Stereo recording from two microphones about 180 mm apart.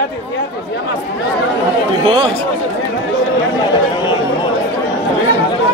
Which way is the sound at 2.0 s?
25° right (ahead or behind).